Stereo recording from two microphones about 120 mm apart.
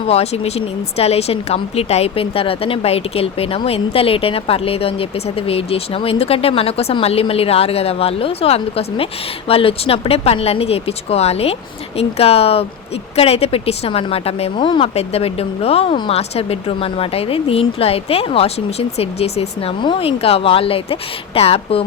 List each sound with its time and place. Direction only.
0.1 s speech: 60° left (ahead or behind); by 14.8 s 40° left (ahead or behind)
14.9 s speech: 55° left (ahead or behind)
19.8 s speech: 45° left (ahead or behind)